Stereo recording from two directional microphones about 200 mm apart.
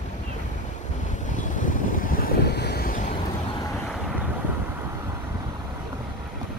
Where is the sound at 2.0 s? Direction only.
45° left (ahead or behind).